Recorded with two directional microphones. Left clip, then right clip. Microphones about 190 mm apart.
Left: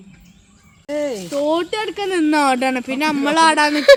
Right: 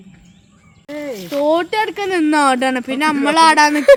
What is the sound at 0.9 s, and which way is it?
Speech, 35° left (ahead or behind).